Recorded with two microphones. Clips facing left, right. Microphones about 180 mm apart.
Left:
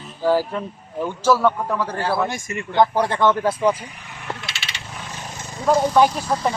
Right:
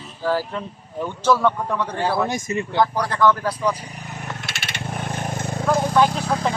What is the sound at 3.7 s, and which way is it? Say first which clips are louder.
Vehicle: right 3 dB; 40° right (ahead or behind).